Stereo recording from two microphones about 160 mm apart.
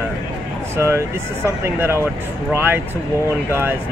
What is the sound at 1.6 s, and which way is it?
Speech, 15° right (ahead or behind).